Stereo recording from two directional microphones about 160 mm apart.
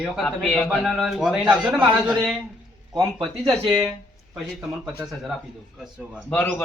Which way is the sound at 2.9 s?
30° right (ahead or behind).